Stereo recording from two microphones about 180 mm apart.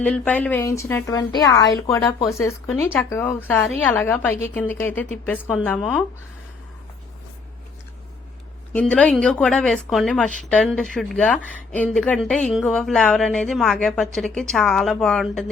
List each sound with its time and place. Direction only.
0.0 s a woman's voice: 5° left (ahead or behind)
8.7 s speech: 10° left (ahead or behind)